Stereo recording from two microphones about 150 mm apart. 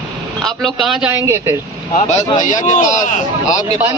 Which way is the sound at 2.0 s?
50° left (ahead or behind).